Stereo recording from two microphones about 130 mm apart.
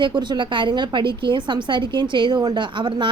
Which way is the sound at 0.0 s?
35° right (ahead or behind).